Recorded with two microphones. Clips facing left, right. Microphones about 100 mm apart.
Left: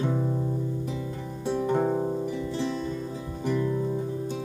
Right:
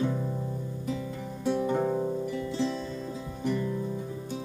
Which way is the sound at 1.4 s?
15° left (ahead or behind).